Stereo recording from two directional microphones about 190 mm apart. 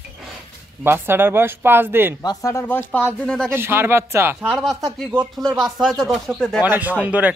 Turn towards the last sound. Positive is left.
turn(degrees=-5)  # may be behind; listen again after turning